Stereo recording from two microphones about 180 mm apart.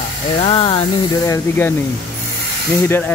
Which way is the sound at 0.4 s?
35° left (ahead or behind).